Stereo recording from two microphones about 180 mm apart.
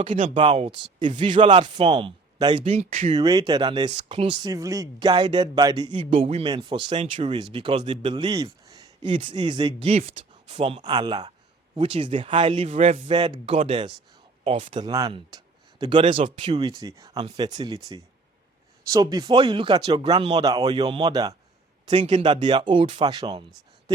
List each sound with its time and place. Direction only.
0.0 s speech: 30° right (ahead or behind)
3.2 s speech: 20° right (ahead or behind)
21.8 s speech: 35° right (ahead or behind)